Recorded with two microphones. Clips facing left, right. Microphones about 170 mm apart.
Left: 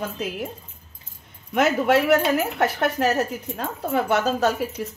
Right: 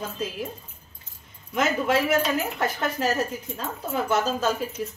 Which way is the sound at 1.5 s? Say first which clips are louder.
Left 4 dB; 65° left (ahead or behind).